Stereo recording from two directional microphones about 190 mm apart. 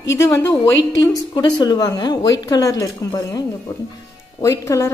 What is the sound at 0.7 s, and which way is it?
Speech, 75° left (ahead or behind).